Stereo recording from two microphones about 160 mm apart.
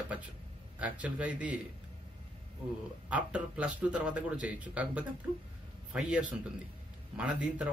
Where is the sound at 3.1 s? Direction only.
10° right (ahead or behind).